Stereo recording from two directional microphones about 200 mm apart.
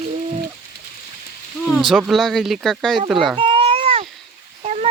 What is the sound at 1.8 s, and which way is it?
Speech, centre (ahead or behind).